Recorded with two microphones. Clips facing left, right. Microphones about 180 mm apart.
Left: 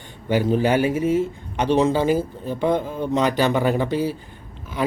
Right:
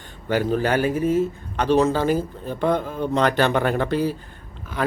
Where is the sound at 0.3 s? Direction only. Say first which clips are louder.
Left 2 dB; 15° left (ahead or behind).